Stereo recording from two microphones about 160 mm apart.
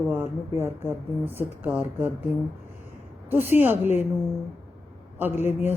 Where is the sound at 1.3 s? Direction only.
10° right (ahead or behind).